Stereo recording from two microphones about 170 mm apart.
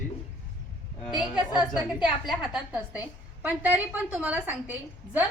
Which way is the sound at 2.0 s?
Centre (ahead or behind).